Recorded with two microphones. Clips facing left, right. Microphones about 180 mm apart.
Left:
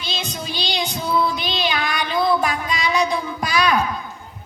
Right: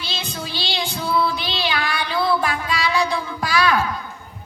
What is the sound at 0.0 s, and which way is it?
Child singing, 20° left (ahead or behind).